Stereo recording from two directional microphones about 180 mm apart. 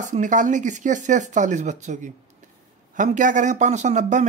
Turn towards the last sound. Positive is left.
turn(degrees=-40)  # may be behind; listen again after turning